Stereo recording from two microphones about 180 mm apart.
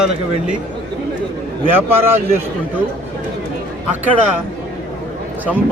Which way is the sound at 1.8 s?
10° right (ahead or behind).